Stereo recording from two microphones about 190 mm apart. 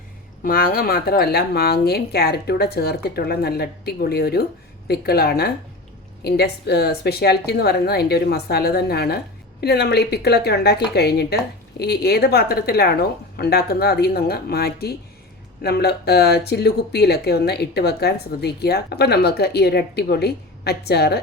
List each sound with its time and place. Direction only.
0.4 s speech: 50° left (ahead or behind)